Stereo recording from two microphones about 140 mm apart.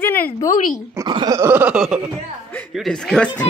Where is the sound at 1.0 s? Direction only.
30° right (ahead or behind); by 1.8 s 15° right (ahead or behind).